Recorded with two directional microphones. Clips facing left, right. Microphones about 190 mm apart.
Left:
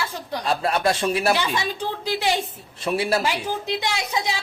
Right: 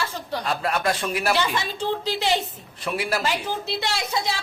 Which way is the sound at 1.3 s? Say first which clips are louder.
Even; 15° left (ahead or behind).